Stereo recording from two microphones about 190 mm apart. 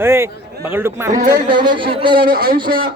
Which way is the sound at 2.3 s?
50° right (ahead or behind).